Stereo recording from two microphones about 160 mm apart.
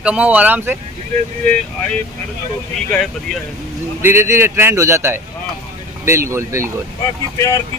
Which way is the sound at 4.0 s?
15° right (ahead or behind).